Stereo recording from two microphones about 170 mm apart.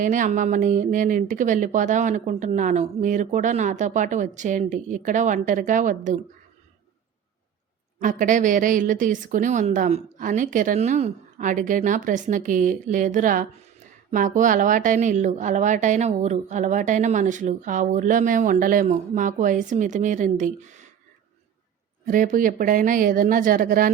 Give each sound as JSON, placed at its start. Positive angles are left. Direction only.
{"t": 0.0, "sound": "a woman's voice", "side_deg": -50}
{"t": 7.9, "sound": "a woman's voice", "side_deg": -50}
{"t": 22.0, "sound": "a woman's voice", "side_deg": -50}